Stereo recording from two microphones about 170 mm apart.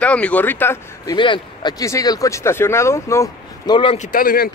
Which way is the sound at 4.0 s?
55° left (ahead or behind).